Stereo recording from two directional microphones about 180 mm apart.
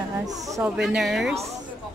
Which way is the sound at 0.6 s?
5° right (ahead or behind).